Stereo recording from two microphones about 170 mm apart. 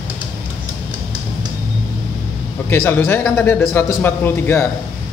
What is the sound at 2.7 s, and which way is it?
Speech, 15° left (ahead or behind).